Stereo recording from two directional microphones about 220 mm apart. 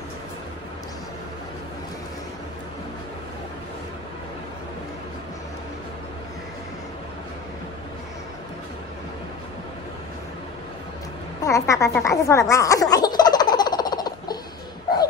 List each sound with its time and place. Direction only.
11.4 s snicker: 15° left (ahead or behind)